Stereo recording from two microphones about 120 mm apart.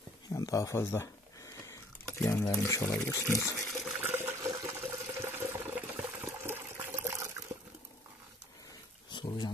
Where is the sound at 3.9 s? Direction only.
20° right (ahead or behind).